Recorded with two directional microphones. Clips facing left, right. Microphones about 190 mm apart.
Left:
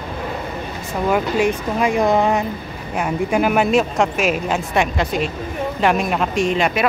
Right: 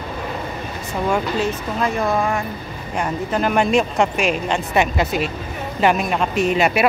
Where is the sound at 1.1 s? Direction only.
15° left (ahead or behind).